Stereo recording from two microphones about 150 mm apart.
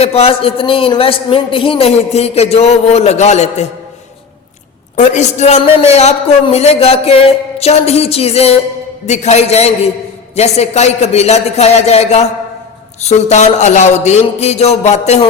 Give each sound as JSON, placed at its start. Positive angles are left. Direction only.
{"t": 0.0, "sound": "a man's voice", "side_deg": 40}
{"t": 4.9, "sound": "a man's voice", "side_deg": 50}